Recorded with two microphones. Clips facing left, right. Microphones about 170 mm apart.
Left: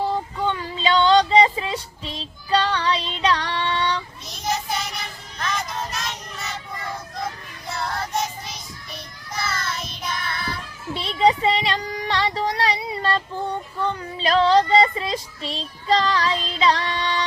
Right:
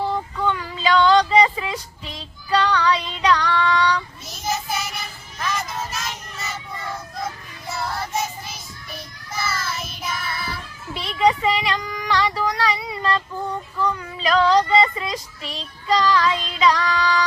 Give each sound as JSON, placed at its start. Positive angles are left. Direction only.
{"t": 0.3, "sound": "child singing", "side_deg": 30}
{"t": 4.4, "sound": "child singing", "side_deg": -5}
{"t": 7.7, "sound": "child singing", "side_deg": -5}
{"t": 10.9, "sound": "child singing", "side_deg": 30}